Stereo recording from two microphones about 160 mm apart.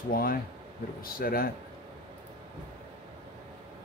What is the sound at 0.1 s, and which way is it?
Speech, 65° left (ahead or behind).